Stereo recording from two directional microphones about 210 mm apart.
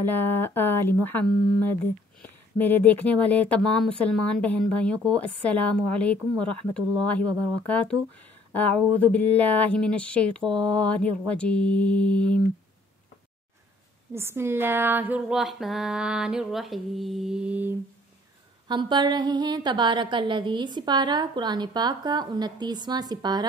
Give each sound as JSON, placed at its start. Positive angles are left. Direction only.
{"t": 0.0, "sound": "speech", "side_deg": 10}
{"t": 2.5, "sound": "speech", "side_deg": 10}
{"t": 14.1, "sound": "speech", "side_deg": -10}
{"t": 18.7, "sound": "a woman's voice", "side_deg": -20}